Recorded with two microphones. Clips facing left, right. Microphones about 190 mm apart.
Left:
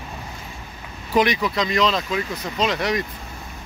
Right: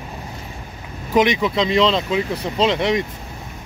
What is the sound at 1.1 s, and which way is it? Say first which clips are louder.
Speech: right 3 dB; 20° right (ahead or behind).